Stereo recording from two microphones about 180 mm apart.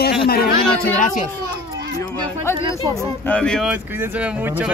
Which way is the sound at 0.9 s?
45° left (ahead or behind).